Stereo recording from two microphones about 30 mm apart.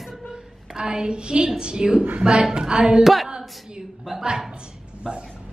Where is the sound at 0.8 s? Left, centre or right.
Right.